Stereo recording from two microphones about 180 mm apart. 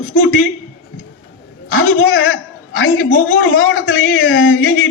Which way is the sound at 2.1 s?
90° left.